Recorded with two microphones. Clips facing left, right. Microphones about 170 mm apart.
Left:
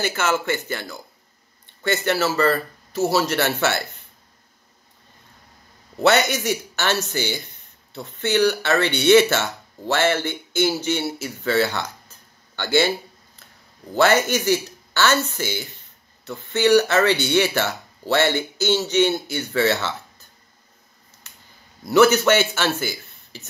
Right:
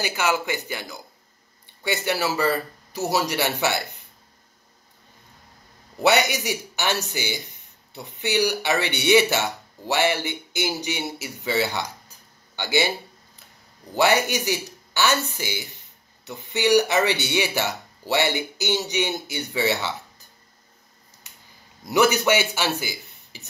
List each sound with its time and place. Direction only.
0.0 s speech: 10° right (ahead or behind)
6.0 s speech: 15° right (ahead or behind)
13.9 s speech: 15° right (ahead or behind)
21.8 s a man's voice: 15° right (ahead or behind)